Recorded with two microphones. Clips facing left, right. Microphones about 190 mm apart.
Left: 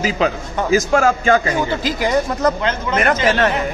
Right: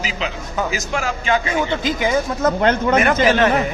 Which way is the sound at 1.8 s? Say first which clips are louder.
Left 1 dB; centre (ahead or behind).